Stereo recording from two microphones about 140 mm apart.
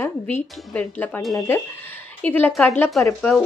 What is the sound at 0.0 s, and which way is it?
Speech, 15° left (ahead or behind).